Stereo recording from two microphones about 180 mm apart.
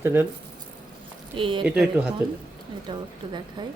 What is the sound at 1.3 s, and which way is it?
Speech, 30° right (ahead or behind).